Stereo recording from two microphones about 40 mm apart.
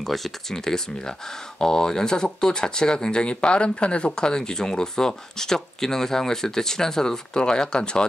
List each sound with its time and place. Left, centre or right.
0.0 s speech: centre; by 8.0 s left